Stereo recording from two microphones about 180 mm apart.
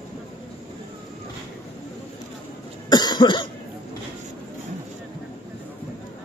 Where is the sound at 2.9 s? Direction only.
25° left (ahead or behind).